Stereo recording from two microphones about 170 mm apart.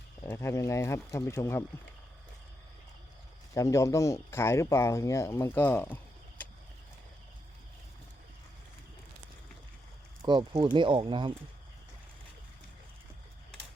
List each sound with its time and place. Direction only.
0.2 s speech: 15° left (ahead or behind)
3.5 s speech: 15° left (ahead or behind)
10.2 s speech: 30° right (ahead or behind)